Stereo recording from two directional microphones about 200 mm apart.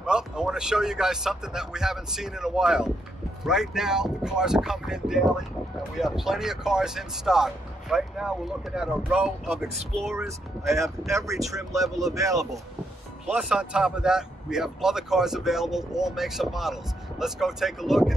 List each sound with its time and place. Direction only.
0.0 s speech: 5° right (ahead or behind)
10.7 s speech: 15° right (ahead or behind)
13.3 s speech: 5° right (ahead or behind)